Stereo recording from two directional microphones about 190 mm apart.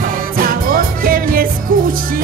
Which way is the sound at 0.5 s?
50° right (ahead or behind).